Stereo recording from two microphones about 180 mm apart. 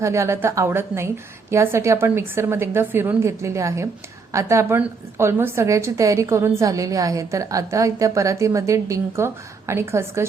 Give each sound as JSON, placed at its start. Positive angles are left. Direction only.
{"t": 0.0, "sound": "a woman's voice", "side_deg": -15}